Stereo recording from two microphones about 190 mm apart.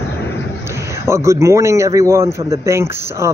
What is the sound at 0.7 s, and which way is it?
A man's voice, 15° right (ahead or behind).